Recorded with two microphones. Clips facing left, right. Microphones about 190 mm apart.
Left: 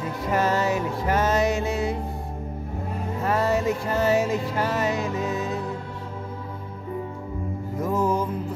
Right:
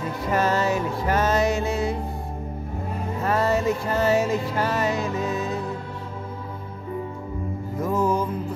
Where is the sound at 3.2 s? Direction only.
15° left (ahead or behind).